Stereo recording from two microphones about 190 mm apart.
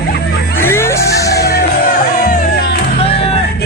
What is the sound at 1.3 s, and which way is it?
Music, 55° left (ahead or behind).